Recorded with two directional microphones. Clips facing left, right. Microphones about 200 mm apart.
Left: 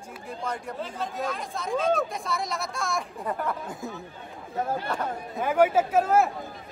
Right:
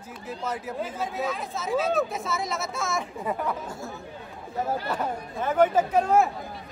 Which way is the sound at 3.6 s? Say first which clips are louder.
Left 1 dB; 20° left (ahead or behind).